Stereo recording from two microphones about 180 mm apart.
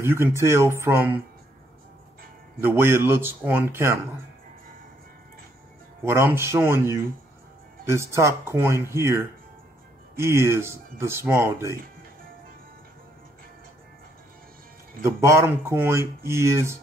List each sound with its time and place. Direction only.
0.0 s speech: 15° right (ahead or behind)
2.6 s speech: 15° right (ahead or behind)
6.0 s speech: 15° right (ahead or behind)
15.0 s speech: 15° right (ahead or behind)